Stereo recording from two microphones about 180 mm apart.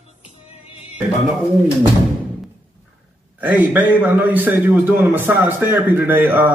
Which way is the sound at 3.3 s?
10° right (ahead or behind).